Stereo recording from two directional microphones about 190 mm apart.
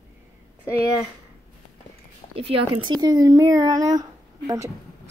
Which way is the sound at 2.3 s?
30° right (ahead or behind).